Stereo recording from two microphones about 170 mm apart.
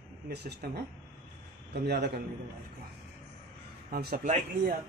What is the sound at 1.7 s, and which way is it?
Speech, 75° right (ahead or behind).